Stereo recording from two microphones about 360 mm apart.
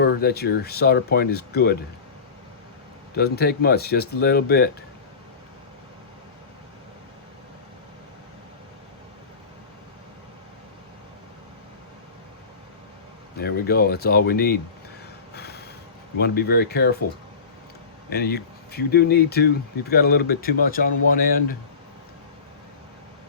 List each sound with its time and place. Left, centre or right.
0.0 s speech: left
3.2 s speech: left
13.3 s speech: left
15.4 s a sound: left
16.1 s speech: left
18.1 s speech: left